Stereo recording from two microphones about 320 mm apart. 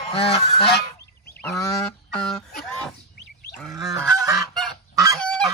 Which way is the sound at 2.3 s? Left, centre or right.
Centre.